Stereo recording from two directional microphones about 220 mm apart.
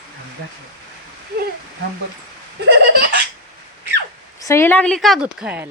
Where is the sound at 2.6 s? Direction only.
50° right (ahead or behind).